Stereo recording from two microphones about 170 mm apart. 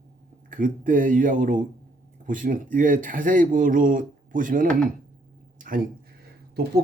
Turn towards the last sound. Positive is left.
turn(degrees=-60)  # may be behind; listen again after turning